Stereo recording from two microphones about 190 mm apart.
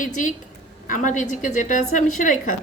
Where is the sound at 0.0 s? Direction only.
45° left (ahead or behind).